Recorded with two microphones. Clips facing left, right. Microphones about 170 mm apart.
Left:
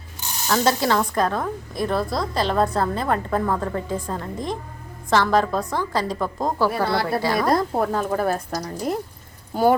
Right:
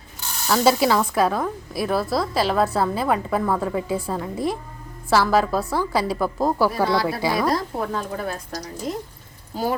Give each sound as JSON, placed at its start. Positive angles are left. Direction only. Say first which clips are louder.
{"t": 0.4, "sound": "a woman's voice", "louder": "right 2 dB", "side_deg": -5}
{"t": 6.8, "sound": "a woman's voice", "louder": "right 1 dB", "side_deg": 60}